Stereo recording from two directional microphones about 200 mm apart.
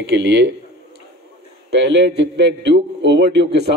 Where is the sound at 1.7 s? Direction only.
60° right (ahead or behind).